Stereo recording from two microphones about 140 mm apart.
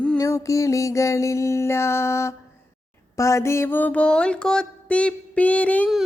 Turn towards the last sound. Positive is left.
turn(degrees=10)  # may be behind; listen again after turning